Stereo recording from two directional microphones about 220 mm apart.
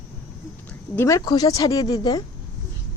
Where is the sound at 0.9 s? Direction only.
15° left (ahead or behind).